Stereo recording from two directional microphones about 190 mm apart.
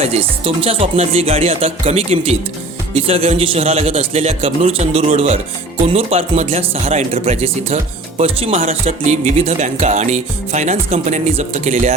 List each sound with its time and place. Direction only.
0.0 s speech: 30° right (ahead or behind)